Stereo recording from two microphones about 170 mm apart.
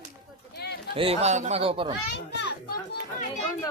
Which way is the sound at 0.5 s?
75° left (ahead or behind).